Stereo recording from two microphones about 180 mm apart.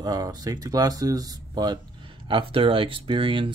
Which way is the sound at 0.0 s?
20° right (ahead or behind).